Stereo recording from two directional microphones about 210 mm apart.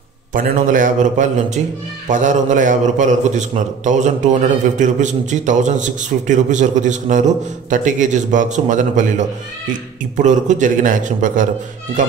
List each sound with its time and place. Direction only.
0.3 s a man's voice: 40° right (ahead or behind)
10.1 s a man's voice: 35° right (ahead or behind)